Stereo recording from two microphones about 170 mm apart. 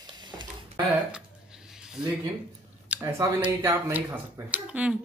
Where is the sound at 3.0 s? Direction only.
20° right (ahead or behind).